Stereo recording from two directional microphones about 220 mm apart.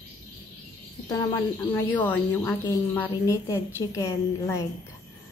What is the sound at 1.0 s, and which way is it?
A woman's voice, 15° left (ahead or behind).